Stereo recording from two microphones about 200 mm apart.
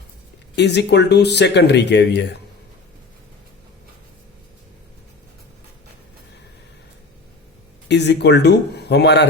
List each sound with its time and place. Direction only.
0.5 s speech: 60° left (ahead or behind)
7.9 s speech: 60° left (ahead or behind)